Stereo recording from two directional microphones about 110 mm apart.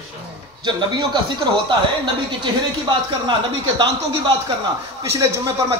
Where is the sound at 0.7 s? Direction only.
40° right (ahead or behind).